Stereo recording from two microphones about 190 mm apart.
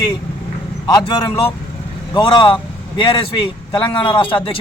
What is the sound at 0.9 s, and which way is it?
A man's voice, 20° left (ahead or behind).